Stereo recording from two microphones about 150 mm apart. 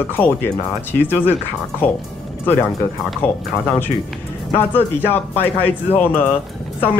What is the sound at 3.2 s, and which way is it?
Speech, 15° left (ahead or behind).